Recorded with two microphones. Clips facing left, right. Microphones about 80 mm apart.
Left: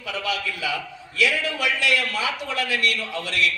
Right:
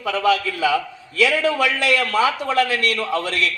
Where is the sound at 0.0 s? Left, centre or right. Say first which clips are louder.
Right 9 dB; right.